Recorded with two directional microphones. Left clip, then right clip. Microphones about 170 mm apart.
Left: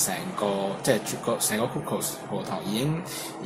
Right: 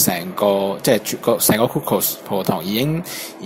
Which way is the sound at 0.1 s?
40° right (ahead or behind).